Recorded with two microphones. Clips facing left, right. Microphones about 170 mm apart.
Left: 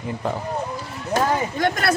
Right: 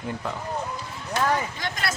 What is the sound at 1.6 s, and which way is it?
Speech, 55° left (ahead or behind).